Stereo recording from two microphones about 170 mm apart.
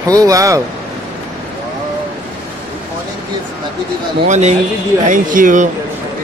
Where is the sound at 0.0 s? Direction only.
20° right (ahead or behind).